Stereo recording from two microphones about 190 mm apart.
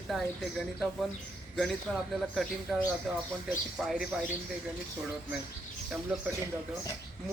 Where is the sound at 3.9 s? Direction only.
Centre (ahead or behind).